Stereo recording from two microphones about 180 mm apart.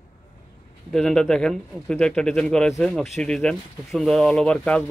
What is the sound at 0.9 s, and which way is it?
A man's voice, centre (ahead or behind).